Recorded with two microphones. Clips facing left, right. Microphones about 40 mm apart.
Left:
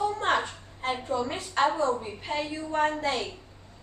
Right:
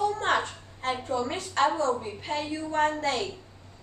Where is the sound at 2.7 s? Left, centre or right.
Centre.